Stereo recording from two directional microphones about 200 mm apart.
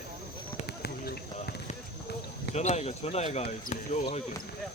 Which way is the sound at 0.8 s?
50° left (ahead or behind).